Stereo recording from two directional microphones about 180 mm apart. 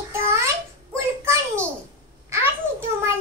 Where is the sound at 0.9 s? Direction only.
15° right (ahead or behind).